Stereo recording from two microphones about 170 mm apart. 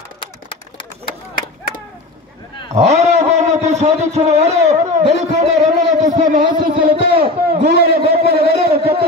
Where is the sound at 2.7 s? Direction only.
40° right (ahead or behind).